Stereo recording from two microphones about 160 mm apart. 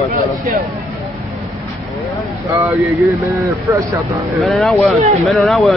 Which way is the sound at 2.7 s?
Centre (ahead or behind).